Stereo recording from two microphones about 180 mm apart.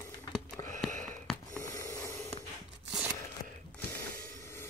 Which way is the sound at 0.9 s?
45° right (ahead or behind).